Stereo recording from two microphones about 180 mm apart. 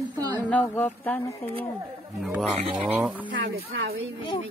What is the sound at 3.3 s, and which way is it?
Speech, 90° right.